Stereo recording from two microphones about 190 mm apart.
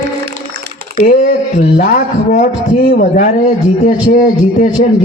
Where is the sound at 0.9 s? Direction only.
40° left (ahead or behind).